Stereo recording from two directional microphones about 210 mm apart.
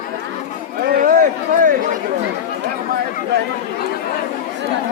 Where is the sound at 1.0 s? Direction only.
40° right (ahead or behind).